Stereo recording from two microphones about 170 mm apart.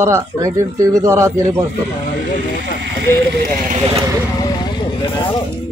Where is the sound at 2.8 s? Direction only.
90° right.